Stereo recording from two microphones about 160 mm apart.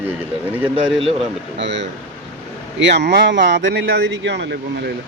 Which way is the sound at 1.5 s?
90° right.